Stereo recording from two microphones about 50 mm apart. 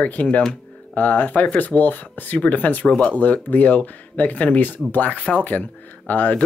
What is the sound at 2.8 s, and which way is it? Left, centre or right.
Speech, left.